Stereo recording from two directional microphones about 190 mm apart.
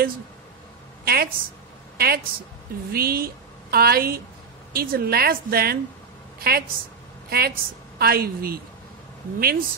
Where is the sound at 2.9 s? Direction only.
50° right (ahead or behind).